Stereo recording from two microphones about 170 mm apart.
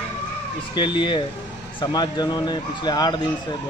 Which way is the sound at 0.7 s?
30° left (ahead or behind).